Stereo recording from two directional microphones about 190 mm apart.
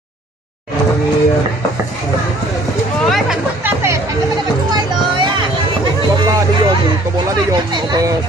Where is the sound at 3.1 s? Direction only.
5° right (ahead or behind).